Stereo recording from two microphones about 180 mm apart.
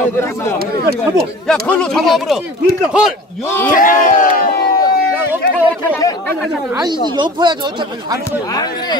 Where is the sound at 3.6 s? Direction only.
50° left (ahead or behind).